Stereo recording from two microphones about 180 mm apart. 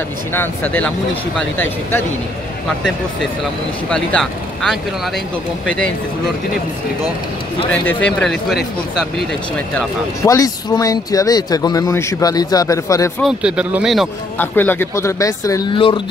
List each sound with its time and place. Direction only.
0.3 s speech: 10° left (ahead or behind)
3.9 s speech: 5° left (ahead or behind)
7.7 s speech: 5° left (ahead or behind)
9.8 s speech: 15° left (ahead or behind)
13.2 s speech: 5° right (ahead or behind)
14.4 s speech: 10° left (ahead or behind); by 16.0 s 25° left (ahead or behind)